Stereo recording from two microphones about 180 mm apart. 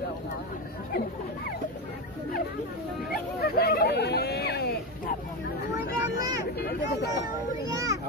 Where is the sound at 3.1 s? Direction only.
60° left (ahead or behind).